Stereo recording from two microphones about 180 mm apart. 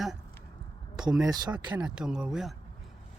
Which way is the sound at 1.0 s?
20° right (ahead or behind).